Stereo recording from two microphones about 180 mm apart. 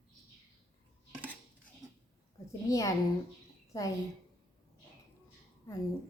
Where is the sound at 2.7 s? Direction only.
15° left (ahead or behind).